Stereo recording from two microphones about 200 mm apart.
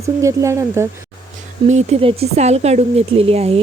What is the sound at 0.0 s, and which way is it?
Speech, 15° right (ahead or behind).